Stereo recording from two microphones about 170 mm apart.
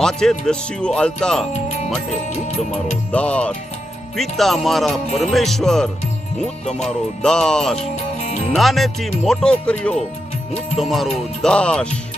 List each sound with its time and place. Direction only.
0.0 s speech: 5° left (ahead or behind)
3.1 s speech: 5° left (ahead or behind)
8.2 s music: 40° left (ahead or behind)
8.5 s speech: centre (ahead or behind)